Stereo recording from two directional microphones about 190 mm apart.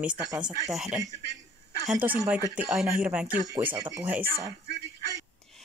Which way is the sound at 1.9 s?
10° right (ahead or behind).